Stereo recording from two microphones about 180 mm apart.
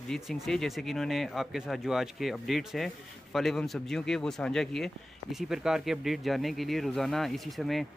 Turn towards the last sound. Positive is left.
turn(degrees=0)  # may be behind; listen again after turning